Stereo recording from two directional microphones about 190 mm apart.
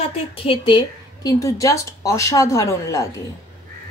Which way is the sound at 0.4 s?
25° left (ahead or behind).